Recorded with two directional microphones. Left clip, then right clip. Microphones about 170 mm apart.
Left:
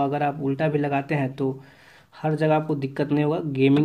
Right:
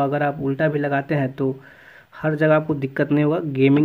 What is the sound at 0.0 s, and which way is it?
Speech, 40° right (ahead or behind).